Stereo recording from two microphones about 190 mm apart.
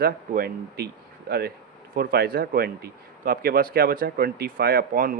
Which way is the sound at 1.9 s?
55° right (ahead or behind).